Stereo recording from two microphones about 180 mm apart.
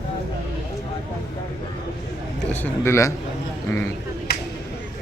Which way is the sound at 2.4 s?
10° left (ahead or behind).